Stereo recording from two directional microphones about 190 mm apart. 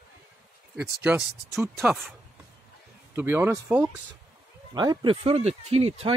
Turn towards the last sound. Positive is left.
turn(degrees=-30)  # may be behind; listen again after turning